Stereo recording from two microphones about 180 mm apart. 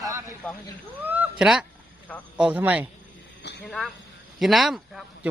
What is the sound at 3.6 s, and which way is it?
Speech, centre (ahead or behind).